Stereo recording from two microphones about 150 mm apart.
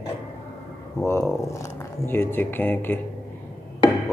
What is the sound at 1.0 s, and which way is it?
Speech, 15° left (ahead or behind).